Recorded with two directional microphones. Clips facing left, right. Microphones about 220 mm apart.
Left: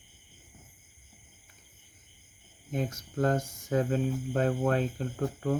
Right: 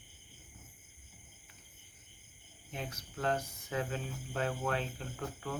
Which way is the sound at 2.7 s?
45° left (ahead or behind).